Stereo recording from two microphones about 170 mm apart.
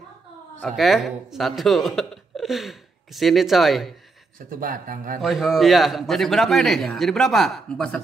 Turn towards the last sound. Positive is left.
turn(degrees=5)  # may be behind; listen again after turning